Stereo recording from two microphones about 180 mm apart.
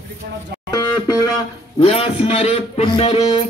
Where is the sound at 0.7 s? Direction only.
20° left (ahead or behind).